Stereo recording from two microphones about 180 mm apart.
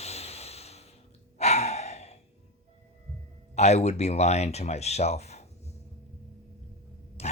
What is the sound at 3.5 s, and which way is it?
Speech, 40° left (ahead or behind).